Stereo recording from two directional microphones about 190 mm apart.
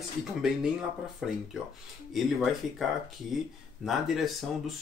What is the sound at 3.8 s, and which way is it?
Speech, centre (ahead or behind).